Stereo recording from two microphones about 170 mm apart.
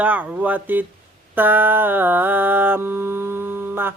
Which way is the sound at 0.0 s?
10° right (ahead or behind).